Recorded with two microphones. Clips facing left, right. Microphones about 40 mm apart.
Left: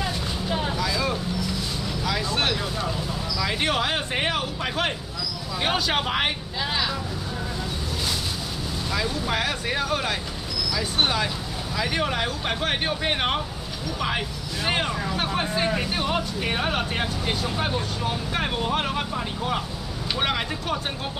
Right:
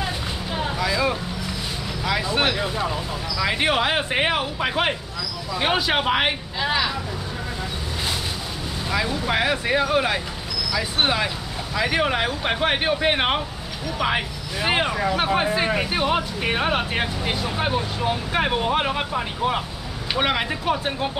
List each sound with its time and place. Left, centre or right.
0.6 s vehicle: centre
2.0 s speech: centre
8.9 s speech: centre